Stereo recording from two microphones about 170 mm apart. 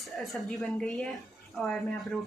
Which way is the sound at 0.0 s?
Centre (ahead or behind).